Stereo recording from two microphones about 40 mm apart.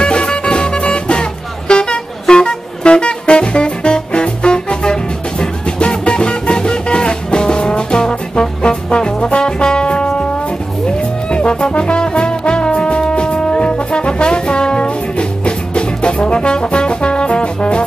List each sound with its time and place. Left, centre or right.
0.0 s music: left